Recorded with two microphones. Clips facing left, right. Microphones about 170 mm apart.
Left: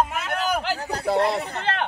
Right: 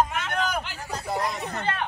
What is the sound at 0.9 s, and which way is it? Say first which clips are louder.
Speech: left 7 dB; 65° left (ahead or behind).